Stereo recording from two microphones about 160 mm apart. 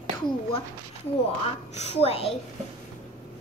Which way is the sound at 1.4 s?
40° left (ahead or behind).